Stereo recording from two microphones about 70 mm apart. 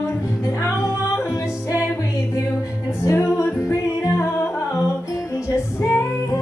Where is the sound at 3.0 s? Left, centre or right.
Left.